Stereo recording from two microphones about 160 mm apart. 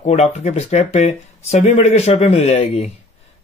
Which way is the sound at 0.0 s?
45° left (ahead or behind).